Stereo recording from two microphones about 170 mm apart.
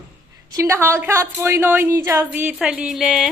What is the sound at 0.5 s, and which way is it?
Speech, 15° right (ahead or behind).